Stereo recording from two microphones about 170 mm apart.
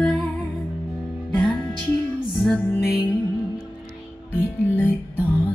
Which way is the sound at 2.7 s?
20° left (ahead or behind).